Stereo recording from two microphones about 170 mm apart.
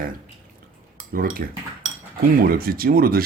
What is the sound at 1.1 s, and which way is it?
Speech, 55° right (ahead or behind).